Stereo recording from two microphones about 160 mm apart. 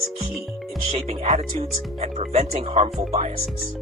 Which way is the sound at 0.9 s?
40° right (ahead or behind).